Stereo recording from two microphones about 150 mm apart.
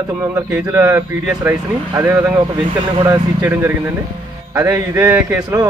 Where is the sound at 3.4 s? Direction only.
15° right (ahead or behind).